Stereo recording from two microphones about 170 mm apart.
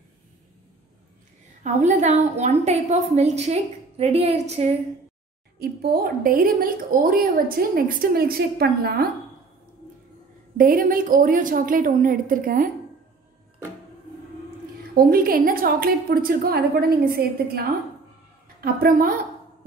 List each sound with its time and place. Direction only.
1.6 s a woman's voice: 45° right (ahead or behind)
5.6 s a woman's voice: 60° right (ahead or behind)
10.6 s a woman's voice: 55° right (ahead or behind)
15.0 s a woman's voice: 60° right (ahead or behind)